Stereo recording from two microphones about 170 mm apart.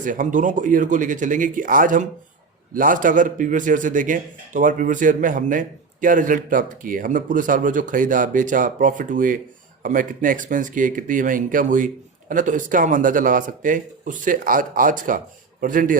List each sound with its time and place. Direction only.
0.0 s speech: 50° right (ahead or behind)